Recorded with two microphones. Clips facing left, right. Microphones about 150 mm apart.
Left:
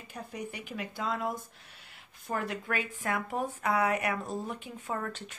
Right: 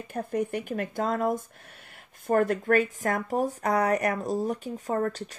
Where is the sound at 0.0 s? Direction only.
50° right (ahead or behind).